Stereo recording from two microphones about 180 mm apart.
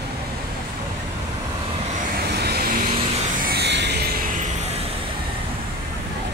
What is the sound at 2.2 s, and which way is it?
Vehicle, 60° right (ahead or behind).